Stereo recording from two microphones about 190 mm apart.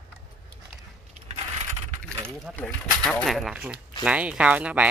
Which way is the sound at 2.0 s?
5° left (ahead or behind).